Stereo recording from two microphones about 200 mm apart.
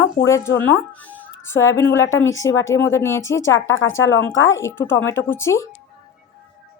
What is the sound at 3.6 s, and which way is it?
Speech, 75° left (ahead or behind).